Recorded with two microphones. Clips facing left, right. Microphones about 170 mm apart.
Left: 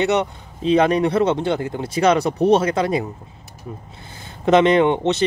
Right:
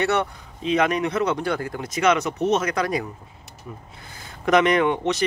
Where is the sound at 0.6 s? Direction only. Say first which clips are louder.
Left 5 dB; 30° left (ahead or behind).